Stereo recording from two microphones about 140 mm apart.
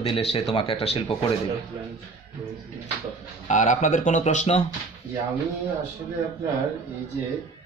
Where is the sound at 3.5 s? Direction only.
60° left (ahead or behind).